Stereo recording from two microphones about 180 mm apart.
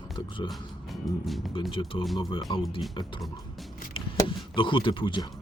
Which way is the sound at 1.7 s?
30° left (ahead or behind).